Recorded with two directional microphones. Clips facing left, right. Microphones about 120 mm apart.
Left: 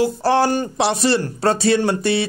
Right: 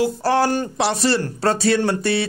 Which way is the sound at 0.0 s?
25° left (ahead or behind).